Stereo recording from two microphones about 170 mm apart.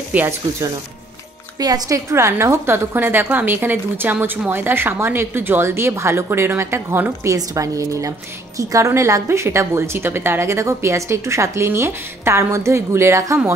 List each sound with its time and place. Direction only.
0.1 s a woman's voice: 10° right (ahead or behind)